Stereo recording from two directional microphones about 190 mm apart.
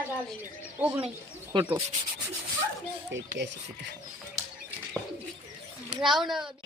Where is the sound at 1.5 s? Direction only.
25° right (ahead or behind).